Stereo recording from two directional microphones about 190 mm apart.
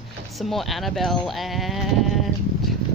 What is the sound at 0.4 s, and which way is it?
Speech, centre (ahead or behind).